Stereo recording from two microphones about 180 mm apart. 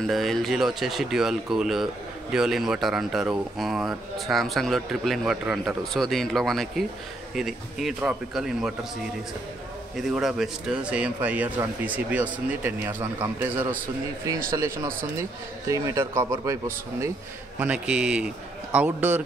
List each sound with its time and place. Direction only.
0.0 s speech: centre (ahead or behind)
10.1 s speech: 5° right (ahead or behind)